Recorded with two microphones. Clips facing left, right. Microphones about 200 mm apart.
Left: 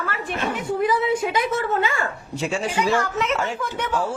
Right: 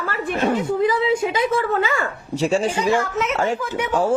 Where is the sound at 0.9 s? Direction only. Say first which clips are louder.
Right 2 dB; 90° right.